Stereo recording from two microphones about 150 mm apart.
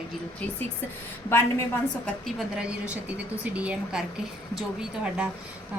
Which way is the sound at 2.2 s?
5° right (ahead or behind).